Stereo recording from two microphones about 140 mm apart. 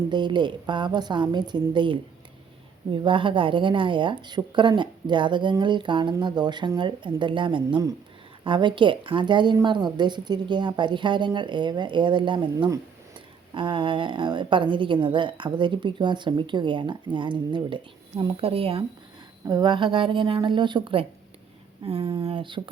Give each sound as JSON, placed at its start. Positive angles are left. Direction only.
{"t": 0.1, "sound": "a woman's voice", "side_deg": -35}
{"t": 19.5, "sound": "a woman's voice", "side_deg": -30}